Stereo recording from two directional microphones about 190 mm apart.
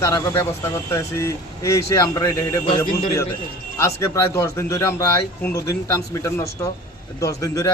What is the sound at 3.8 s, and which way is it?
Speech, 15° left (ahead or behind).